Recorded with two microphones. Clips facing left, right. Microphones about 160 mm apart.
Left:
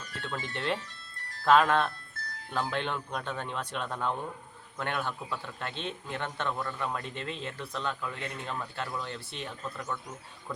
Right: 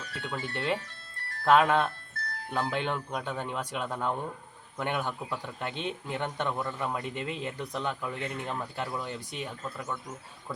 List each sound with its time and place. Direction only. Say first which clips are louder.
0.2 s speech: right 1 dB; 15° right (ahead or behind)
0.8 s ice cream truck: right 1 dB; 65° right (ahead or behind)
1.5 s speech: right 1 dB; 10° right (ahead or behind)